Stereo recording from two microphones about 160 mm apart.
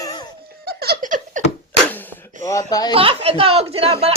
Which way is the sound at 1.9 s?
15° left (ahead or behind).